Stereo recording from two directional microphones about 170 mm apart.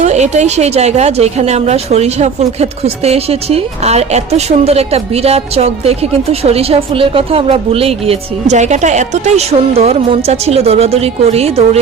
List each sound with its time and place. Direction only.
0.0 s a woman's voice: 40° right (ahead or behind)